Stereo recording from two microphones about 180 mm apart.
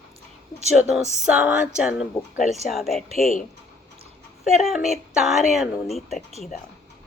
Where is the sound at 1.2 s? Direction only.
5° right (ahead or behind).